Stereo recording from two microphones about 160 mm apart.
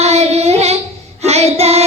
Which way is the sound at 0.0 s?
40° right (ahead or behind).